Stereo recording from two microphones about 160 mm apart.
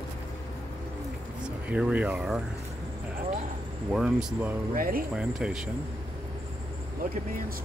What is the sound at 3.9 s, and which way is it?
Speech, 5° right (ahead or behind).